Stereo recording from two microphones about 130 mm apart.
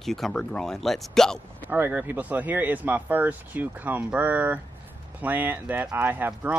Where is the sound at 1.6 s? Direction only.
15° right (ahead or behind).